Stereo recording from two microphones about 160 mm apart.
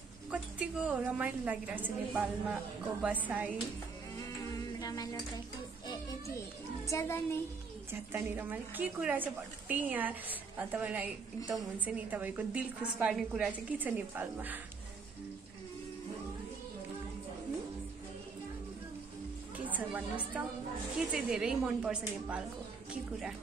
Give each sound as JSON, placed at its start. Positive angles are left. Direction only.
{"t": 0.3, "sound": "a woman's voice", "side_deg": -10}
{"t": 4.2, "sound": "a sound", "side_deg": 20}
{"t": 5.9, "sound": "children playing", "side_deg": 20}
{"t": 6.9, "sound": "a child's voice", "side_deg": 15}
{"t": 7.9, "sound": "a woman's voice", "side_deg": -10}
{"t": 19.5, "sound": "a woman's voice", "side_deg": -10}